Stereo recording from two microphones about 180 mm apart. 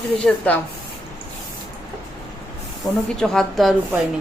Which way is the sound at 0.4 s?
5° left (ahead or behind).